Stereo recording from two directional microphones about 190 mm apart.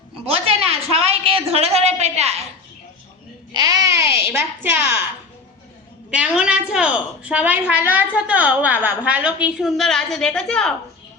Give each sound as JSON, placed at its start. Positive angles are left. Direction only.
{"t": 0.3, "sound": "a woman's voice", "side_deg": -30}
{"t": 3.5, "sound": "speech", "side_deg": -20}
{"t": 6.1, "sound": "a woman's voice", "side_deg": -5}